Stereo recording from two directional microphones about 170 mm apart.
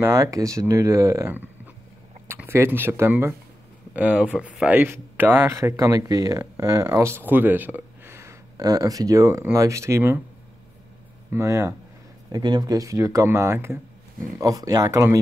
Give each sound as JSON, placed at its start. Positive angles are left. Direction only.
{"t": 0.0, "sound": "speech", "side_deg": -20}
{"t": 11.3, "sound": "speech", "side_deg": -15}